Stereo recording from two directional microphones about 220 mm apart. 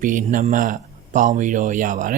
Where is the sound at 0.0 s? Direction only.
35° right (ahead or behind).